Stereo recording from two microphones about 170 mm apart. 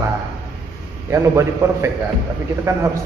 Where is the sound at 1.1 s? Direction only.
15° right (ahead or behind).